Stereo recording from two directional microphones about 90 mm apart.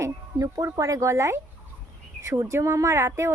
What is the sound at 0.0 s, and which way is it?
Speech, 35° right (ahead or behind).